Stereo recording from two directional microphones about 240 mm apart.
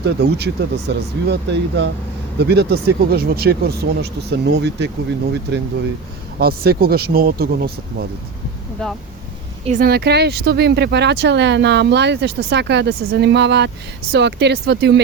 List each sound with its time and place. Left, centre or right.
0.0 s speech: right
8.8 s speech: centre
9.6 s speech: right